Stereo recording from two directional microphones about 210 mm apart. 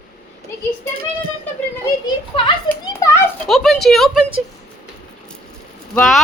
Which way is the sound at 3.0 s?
15° left (ahead or behind).